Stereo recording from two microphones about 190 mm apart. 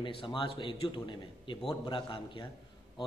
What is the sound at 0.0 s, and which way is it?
A man's voice, 25° left (ahead or behind).